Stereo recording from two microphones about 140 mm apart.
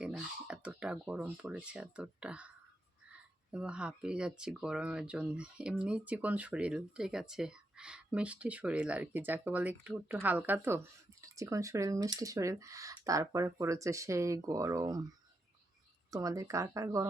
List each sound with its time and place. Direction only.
0.0 s a sound: 5° right (ahead or behind)
1.7 s speech: 10° right (ahead or behind)
3.5 s speech: 5° right (ahead or behind); by 15.0 s 25° right (ahead or behind)
16.0 s speech: 25° right (ahead or behind)